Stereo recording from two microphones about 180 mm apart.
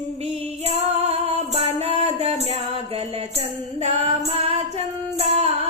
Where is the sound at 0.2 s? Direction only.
35° right (ahead or behind).